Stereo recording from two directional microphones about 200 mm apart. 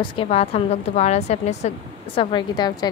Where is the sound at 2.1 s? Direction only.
20° left (ahead or behind).